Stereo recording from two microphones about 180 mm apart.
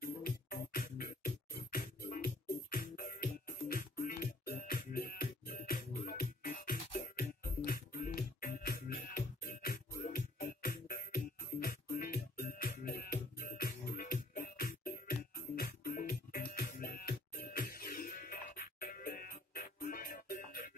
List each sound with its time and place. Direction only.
0.0 s music: 55° left (ahead or behind)